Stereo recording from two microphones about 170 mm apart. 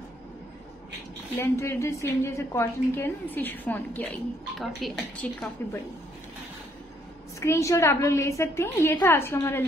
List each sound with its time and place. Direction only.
1.4 s a woman's voice: 15° left (ahead or behind)
7.3 s a woman's voice: 15° left (ahead or behind)